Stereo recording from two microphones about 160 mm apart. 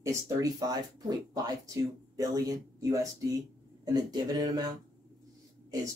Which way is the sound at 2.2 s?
25° right (ahead or behind).